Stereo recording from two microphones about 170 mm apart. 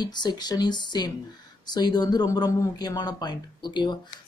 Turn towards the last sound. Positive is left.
turn(degrees=25)  # may be behind; listen again after turning